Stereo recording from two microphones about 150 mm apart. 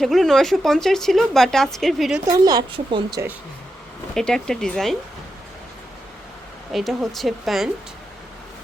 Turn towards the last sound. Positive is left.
turn(degrees=0)  # may be behind; listen again after turning